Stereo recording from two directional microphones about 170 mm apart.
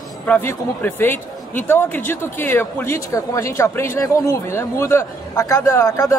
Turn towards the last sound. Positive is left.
turn(degrees=20)  # may be behind; listen again after turning